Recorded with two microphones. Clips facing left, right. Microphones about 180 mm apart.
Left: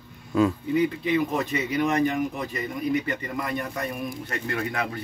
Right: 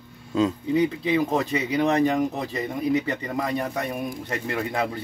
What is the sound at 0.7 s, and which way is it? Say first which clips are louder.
Speech: right 1 dB; 30° right (ahead or behind).